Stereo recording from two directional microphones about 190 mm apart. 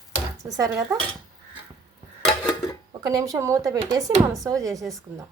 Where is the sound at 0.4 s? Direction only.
15° right (ahead or behind).